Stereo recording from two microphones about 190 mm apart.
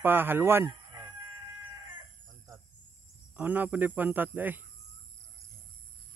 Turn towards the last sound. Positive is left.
turn(degrees=-10)  # may be behind; listen again after turning